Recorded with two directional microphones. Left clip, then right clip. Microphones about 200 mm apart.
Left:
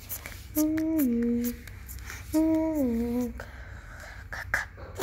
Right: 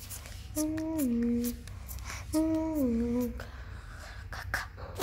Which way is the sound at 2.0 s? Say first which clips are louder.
Left 4 dB; 5° right (ahead or behind).